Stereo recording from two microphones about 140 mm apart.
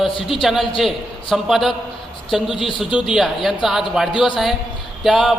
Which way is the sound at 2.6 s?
40° left (ahead or behind).